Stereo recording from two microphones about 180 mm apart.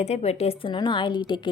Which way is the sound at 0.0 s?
35° left (ahead or behind).